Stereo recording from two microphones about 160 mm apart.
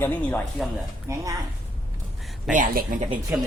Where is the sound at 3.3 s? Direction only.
10° right (ahead or behind).